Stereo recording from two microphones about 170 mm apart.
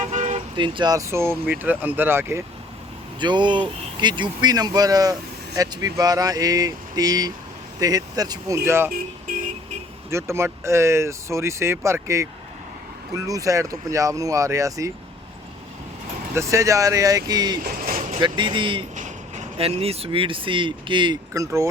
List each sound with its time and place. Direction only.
0.0 s vehicle: 45° right (ahead or behind)
0.5 s speech: 30° right (ahead or behind)
3.2 s speech: 25° right (ahead or behind)
10.1 s speech: 15° right (ahead or behind)
16.3 s speech: 15° right (ahead or behind)
17.6 s a sound: 55° right (ahead or behind)
18.2 s speech: 30° right (ahead or behind)